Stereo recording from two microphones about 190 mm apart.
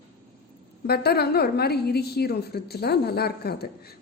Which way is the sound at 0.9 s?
55° left (ahead or behind).